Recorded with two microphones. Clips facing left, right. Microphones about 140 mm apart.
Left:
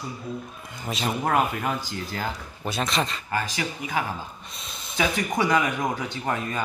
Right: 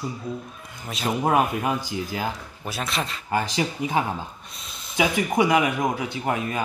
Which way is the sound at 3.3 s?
25° right (ahead or behind).